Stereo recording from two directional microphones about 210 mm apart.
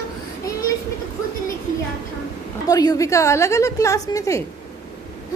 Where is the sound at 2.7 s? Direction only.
15° left (ahead or behind).